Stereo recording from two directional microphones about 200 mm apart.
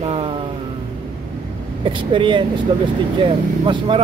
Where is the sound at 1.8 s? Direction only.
25° right (ahead or behind).